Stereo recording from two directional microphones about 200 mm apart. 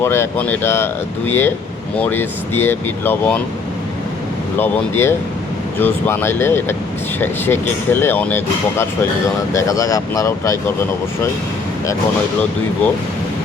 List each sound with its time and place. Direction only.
0.0 s speech: 10° left (ahead or behind)
4.5 s speech: 10° left (ahead or behind)